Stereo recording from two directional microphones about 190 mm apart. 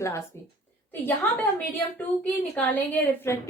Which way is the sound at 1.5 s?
10° left (ahead or behind).